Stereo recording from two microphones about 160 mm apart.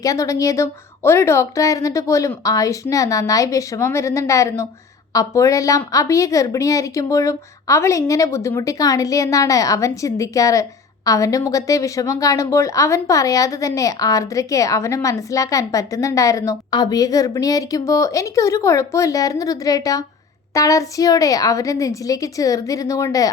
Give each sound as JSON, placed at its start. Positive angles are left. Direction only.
{"t": 0.0, "sound": "a woman's voice", "side_deg": 20}